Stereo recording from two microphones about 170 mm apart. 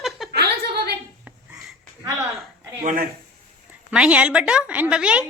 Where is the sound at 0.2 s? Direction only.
Centre (ahead or behind).